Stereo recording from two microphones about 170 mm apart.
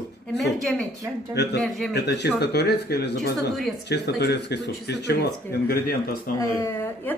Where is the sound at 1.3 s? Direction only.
85° left; by 5.9 s 65° left (ahead or behind).